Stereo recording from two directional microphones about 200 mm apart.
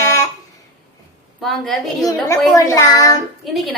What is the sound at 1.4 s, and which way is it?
Speech, centre (ahead or behind).